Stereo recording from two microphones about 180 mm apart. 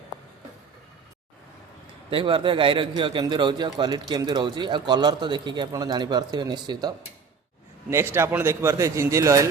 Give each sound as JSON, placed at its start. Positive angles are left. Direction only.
{"t": 2.0, "sound": "a man's voice", "side_deg": -30}